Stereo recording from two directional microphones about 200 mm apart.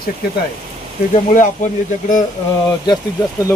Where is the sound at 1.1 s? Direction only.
40° left (ahead or behind).